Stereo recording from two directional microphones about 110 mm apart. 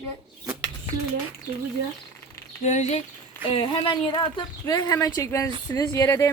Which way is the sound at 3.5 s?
50° left (ahead or behind).